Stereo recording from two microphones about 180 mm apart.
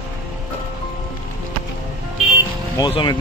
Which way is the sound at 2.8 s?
25° left (ahead or behind).